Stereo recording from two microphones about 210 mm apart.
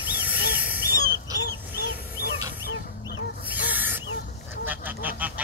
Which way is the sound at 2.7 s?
60° left (ahead or behind).